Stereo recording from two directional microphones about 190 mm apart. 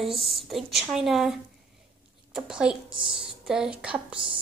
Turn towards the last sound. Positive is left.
turn(degrees=-5)  # may be behind; listen again after turning